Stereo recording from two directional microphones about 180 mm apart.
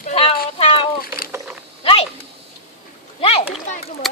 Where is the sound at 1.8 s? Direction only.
30° left (ahead or behind).